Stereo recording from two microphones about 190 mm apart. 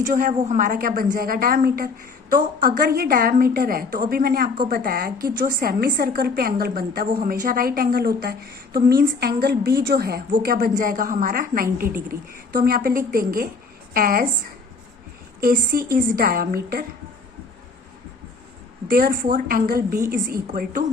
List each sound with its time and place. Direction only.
0.0 s a woman's voice: 45° right (ahead or behind)
15.4 s a woman's voice: 50° right (ahead or behind)
18.9 s a woman's voice: 50° right (ahead or behind)